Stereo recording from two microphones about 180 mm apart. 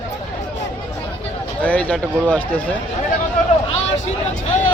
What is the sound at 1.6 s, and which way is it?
Speech, 10° left (ahead or behind).